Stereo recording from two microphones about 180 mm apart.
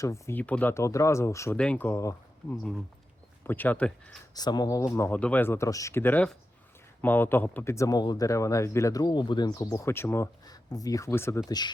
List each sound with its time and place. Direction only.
0.0 s speech: 15° left (ahead or behind)
4.4 s speech: 20° left (ahead or behind)